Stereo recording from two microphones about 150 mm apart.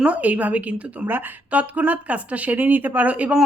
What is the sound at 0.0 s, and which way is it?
A woman's voice, 10° right (ahead or behind).